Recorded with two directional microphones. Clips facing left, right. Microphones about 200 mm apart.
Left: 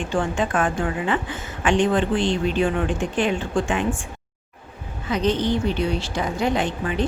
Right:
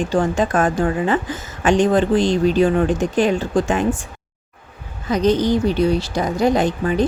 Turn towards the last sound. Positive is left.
turn(degrees=-40)  # may be behind; listen again after turning